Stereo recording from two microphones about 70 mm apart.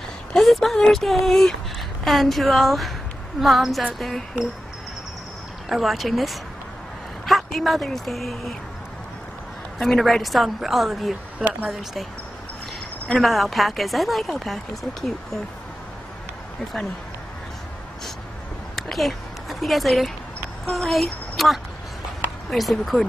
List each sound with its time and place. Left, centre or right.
0.3 s a woman's voice: centre
5.7 s a woman's voice: centre
9.8 s a woman's voice: centre
11.3 s speech: right
13.1 s a woman's voice: centre
18.8 s a sound: centre
20.7 s a woman's voice: centre